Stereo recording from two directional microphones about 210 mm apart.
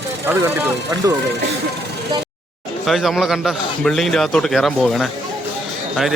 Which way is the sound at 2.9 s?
Centre (ahead or behind).